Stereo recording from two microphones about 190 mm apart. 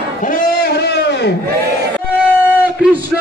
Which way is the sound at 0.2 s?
45° left (ahead or behind).